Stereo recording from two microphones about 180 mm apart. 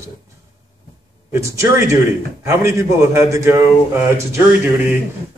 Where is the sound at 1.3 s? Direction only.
15° right (ahead or behind).